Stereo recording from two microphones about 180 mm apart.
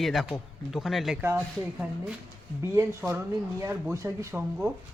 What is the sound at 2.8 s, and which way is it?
Speech, 15° right (ahead or behind).